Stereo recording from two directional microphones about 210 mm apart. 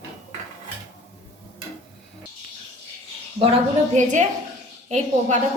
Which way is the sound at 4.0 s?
35° right (ahead or behind).